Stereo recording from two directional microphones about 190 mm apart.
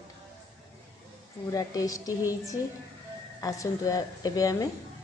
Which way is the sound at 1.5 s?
20° left (ahead or behind).